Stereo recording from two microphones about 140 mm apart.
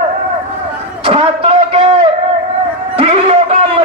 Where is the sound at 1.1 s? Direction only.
45° right (ahead or behind).